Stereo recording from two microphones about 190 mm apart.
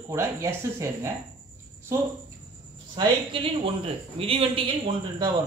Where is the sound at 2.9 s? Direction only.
25° right (ahead or behind).